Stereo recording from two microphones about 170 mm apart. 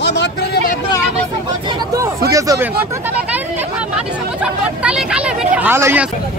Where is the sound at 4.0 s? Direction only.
5° right (ahead or behind).